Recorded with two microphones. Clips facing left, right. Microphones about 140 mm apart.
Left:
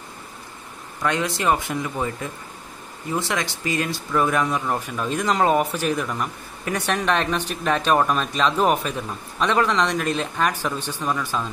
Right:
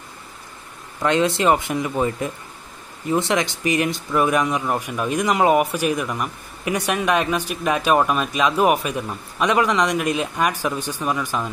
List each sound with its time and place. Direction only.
1.0 s speech: 20° right (ahead or behind)